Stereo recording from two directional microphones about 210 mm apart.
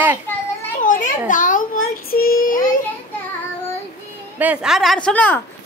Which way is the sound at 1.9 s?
45° left (ahead or behind).